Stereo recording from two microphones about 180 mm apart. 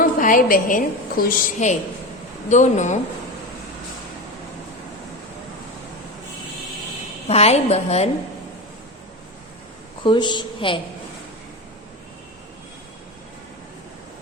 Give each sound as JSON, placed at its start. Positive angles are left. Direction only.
{"t": 0.0, "sound": "a woman's voice", "side_deg": 50}
{"t": 7.3, "sound": "a woman's voice", "side_deg": 35}
{"t": 10.0, "sound": "a woman's voice", "side_deg": 25}